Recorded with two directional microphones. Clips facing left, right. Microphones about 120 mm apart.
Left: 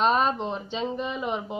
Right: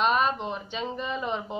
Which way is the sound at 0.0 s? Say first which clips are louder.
Left 2 dB; 30° left (ahead or behind).